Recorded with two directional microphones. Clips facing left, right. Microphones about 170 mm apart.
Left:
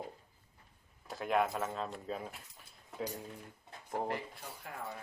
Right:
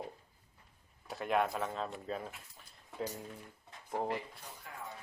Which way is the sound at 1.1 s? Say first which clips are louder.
Even; centre (ahead or behind).